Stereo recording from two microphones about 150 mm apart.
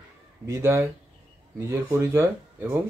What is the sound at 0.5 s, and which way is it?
Speech, 20° right (ahead or behind).